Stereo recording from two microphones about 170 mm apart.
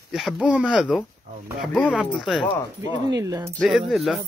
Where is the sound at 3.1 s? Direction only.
20° right (ahead or behind).